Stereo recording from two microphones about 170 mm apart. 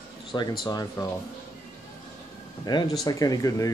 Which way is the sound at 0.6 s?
20° left (ahead or behind).